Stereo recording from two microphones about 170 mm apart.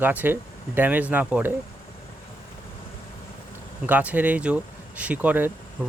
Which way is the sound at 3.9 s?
10° right (ahead or behind).